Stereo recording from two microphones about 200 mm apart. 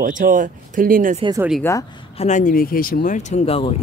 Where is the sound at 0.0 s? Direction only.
40° right (ahead or behind).